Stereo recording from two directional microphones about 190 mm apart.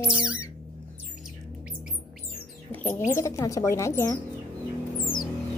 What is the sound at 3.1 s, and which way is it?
Speech, 15° left (ahead or behind).